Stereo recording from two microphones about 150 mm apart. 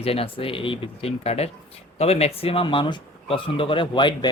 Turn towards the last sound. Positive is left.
turn(degrees=30)  # may be behind; listen again after turning